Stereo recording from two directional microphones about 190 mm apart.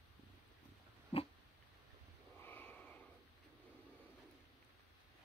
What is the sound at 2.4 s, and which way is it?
Snort, 10° left (ahead or behind).